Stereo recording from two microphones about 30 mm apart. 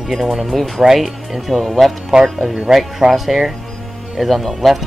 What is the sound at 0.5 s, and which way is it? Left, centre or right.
Speech, centre.